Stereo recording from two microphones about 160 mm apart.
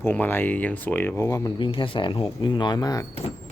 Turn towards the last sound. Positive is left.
turn(degrees=25)  # may be behind; listen again after turning